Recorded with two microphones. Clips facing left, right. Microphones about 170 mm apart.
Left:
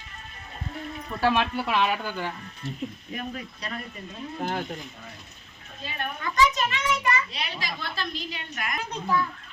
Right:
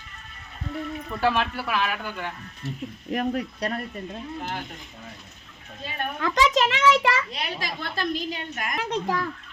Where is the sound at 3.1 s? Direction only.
65° right (ahead or behind).